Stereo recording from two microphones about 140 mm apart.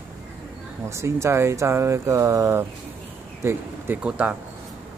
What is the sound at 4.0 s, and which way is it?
Speech, 10° right (ahead or behind).